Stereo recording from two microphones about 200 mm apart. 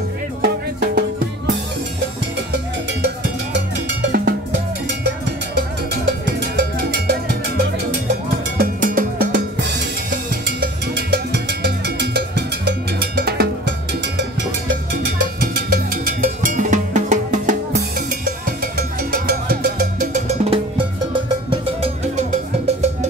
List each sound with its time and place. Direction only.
0.4 s music: 55° right (ahead or behind)
4.1 s cowbell: 50° right (ahead or behind)
6.5 s cowbell: 55° right (ahead or behind)
8.5 s cowbell: 40° right (ahead or behind)
15.7 s music: 40° right (ahead or behind)
18.6 s music: 45° right (ahead or behind); by 20.8 s 30° right (ahead or behind)